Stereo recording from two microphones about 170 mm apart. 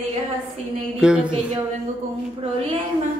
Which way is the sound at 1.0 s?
5° right (ahead or behind).